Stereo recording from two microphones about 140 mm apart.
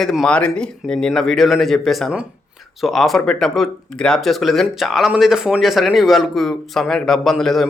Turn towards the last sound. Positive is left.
turn(degrees=0)  # may be behind; listen again after turning